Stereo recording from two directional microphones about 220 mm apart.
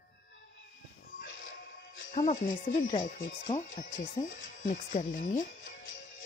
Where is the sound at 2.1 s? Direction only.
35° left (ahead or behind).